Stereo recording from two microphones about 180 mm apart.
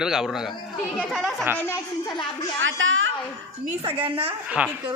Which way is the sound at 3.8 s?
30° right (ahead or behind).